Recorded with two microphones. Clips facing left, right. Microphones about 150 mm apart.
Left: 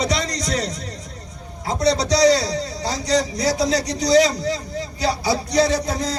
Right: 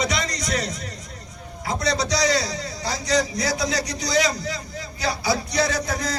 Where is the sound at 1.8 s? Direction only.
35° left (ahead or behind).